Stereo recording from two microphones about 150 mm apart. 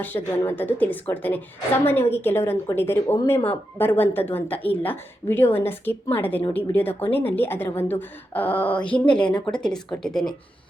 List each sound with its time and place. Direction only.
0.0 s a woman's voice: 15° left (ahead or behind)